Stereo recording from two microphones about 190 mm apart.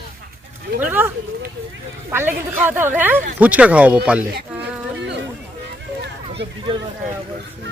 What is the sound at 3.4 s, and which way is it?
Speech, 10° right (ahead or behind).